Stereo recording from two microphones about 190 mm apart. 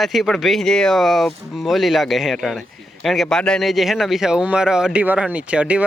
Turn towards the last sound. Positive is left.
turn(degrees=-5)  # may be behind; listen again after turning